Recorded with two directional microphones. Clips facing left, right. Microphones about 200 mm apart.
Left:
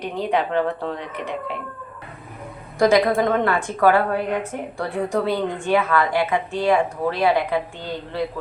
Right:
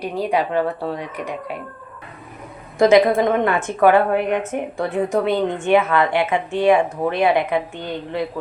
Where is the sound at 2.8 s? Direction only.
20° right (ahead or behind).